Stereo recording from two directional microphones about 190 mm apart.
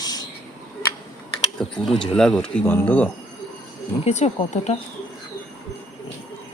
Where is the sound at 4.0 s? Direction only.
35° left (ahead or behind).